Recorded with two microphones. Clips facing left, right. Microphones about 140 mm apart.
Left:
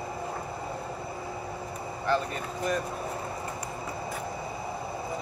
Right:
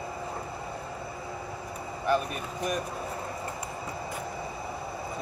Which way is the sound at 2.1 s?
15° right (ahead or behind).